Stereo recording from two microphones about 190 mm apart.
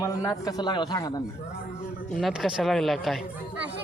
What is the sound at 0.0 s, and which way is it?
A man's voice, 15° left (ahead or behind).